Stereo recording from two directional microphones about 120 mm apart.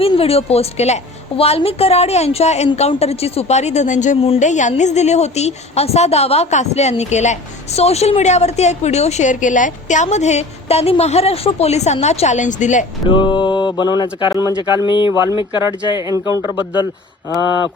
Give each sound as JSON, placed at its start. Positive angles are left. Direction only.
{"t": 0.0, "sound": "a woman's voice", "side_deg": 55}
{"t": 4.8, "sound": "a woman's voice", "side_deg": 75}
{"t": 13.1, "sound": "mantra", "side_deg": 40}
{"t": 15.0, "sound": "speech", "side_deg": -20}